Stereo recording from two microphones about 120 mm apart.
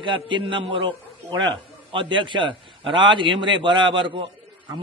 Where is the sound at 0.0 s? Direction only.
40° right (ahead or behind).